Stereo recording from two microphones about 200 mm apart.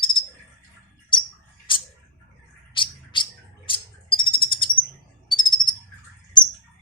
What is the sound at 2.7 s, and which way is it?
Bird, 25° left (ahead or behind).